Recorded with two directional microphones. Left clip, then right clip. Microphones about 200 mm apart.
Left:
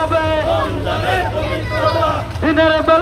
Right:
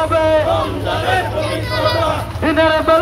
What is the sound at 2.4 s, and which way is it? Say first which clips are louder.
Speech: even; 30° right (ahead or behind).